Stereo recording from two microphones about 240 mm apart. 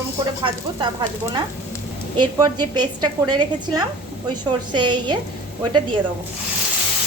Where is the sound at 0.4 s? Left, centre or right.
Centre.